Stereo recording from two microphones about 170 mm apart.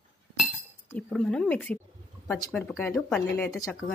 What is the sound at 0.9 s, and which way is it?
Speech, 5° left (ahead or behind).